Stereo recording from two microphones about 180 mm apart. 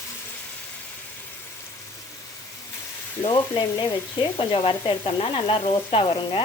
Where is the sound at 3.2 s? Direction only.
25° left (ahead or behind).